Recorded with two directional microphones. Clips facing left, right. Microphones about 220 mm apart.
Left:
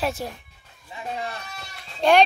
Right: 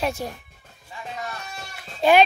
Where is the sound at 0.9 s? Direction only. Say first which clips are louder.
Left 3 dB; 25° left (ahead or behind).